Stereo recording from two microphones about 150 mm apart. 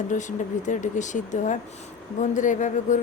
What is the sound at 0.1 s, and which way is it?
A woman's voice, 55° left (ahead or behind).